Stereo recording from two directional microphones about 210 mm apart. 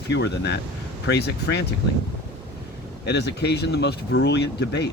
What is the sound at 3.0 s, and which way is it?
Speech, 55° left (ahead or behind).